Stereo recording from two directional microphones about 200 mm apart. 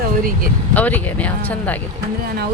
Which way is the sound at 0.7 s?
10° left (ahead or behind).